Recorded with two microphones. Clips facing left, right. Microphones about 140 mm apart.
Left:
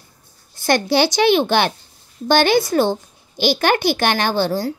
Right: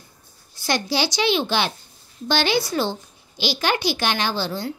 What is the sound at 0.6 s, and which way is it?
A child's voice, 55° left (ahead or behind).